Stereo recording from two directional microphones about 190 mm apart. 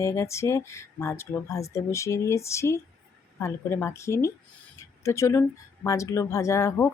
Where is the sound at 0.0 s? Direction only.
15° left (ahead or behind).